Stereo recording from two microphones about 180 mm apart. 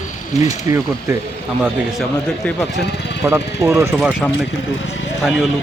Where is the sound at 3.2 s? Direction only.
15° right (ahead or behind).